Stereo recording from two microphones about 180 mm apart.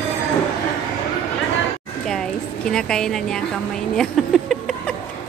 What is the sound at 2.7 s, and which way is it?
A woman's voice, 5° left (ahead or behind).